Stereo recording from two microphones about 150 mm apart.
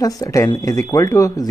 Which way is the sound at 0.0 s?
20° left (ahead or behind).